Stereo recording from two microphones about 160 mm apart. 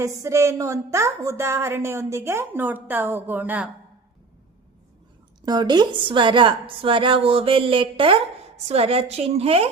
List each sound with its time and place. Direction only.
0.0 s a woman's voice: 20° right (ahead or behind)
5.5 s a woman's voice: 25° right (ahead or behind)